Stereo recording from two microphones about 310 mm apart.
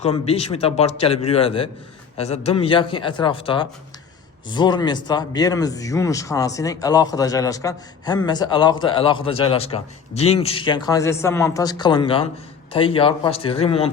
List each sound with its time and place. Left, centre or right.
0.0 s a man's voice: centre